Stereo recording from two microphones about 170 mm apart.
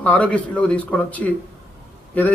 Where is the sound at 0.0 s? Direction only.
5° left (ahead or behind).